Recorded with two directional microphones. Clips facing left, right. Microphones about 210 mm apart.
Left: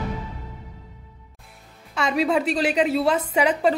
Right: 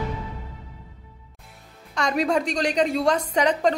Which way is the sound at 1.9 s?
5° left (ahead or behind).